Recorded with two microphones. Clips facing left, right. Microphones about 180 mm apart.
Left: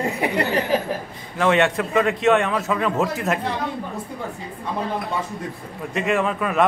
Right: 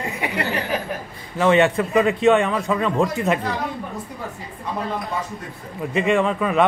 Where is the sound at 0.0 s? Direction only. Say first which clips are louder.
Left 4 dB; 35° left (ahead or behind).